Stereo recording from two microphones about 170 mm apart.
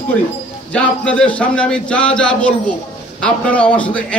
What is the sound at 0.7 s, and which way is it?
A man's voice, 5° left (ahead or behind).